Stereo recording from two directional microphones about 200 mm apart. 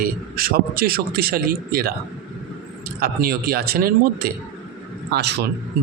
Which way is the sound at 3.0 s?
50° right (ahead or behind).